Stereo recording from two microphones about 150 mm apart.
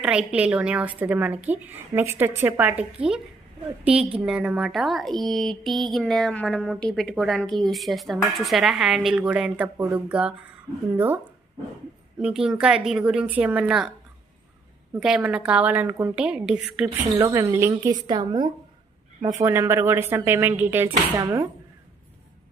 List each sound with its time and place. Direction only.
0.0 s speech: 5° right (ahead or behind)
12.2 s speech: 5° right (ahead or behind)
14.9 s speech: 5° right (ahead or behind)
17.2 s a woman's voice: 20° right (ahead or behind)
19.4 s a woman's voice: 15° right (ahead or behind)